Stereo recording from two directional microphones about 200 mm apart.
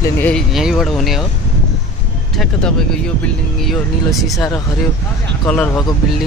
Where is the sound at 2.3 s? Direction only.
5° left (ahead or behind).